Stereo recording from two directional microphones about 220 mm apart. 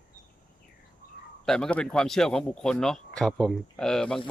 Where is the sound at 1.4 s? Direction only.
5° left (ahead or behind).